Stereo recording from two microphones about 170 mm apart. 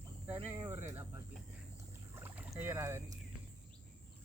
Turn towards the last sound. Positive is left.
turn(degrees=-15)  # may be behind; listen again after turning